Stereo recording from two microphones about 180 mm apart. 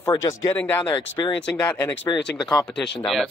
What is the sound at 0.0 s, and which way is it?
Speech, 15° left (ahead or behind).